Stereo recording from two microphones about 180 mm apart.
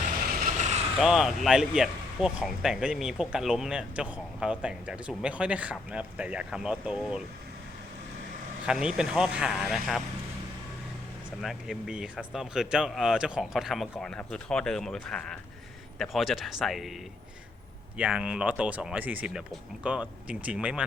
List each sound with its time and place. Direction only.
0.3 s vehicle: 45° right (ahead or behind)
0.9 s speech: centre (ahead or behind)
8.6 s speech: 5° right (ahead or behind)
11.4 s speech: 5° right (ahead or behind)
17.9 s speech: 5° right (ahead or behind)